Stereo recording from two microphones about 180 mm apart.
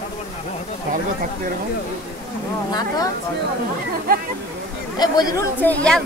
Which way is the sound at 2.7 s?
20° left (ahead or behind).